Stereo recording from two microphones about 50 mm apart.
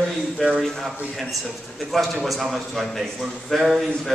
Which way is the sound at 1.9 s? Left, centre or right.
Centre.